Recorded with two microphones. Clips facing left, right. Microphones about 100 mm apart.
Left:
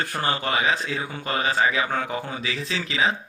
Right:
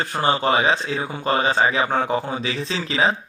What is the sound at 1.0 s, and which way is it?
Speech, 20° right (ahead or behind).